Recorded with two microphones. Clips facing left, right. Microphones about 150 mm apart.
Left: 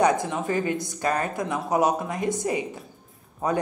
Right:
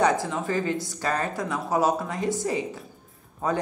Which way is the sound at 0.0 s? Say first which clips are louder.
Left 1 dB; 20° left (ahead or behind).